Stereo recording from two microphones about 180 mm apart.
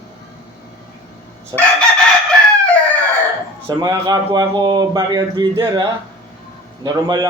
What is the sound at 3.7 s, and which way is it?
Speech, 20° right (ahead or behind).